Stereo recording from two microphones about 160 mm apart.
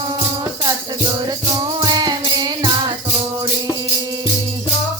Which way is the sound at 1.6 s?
25° right (ahead or behind).